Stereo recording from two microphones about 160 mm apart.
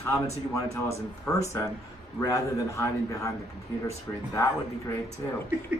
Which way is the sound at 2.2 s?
20° left (ahead or behind).